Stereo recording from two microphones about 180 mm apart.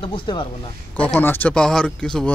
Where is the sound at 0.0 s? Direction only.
30° left (ahead or behind).